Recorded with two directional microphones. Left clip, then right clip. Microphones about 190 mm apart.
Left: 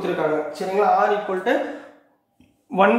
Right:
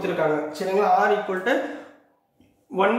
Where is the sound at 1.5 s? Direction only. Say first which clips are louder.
Left 2 dB; centre (ahead or behind).